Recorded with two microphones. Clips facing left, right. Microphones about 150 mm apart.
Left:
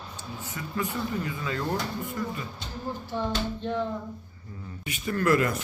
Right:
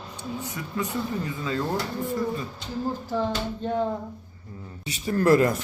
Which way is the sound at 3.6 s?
45° right (ahead or behind).